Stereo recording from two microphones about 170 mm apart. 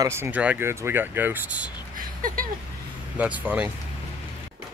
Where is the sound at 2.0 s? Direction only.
55° right (ahead or behind).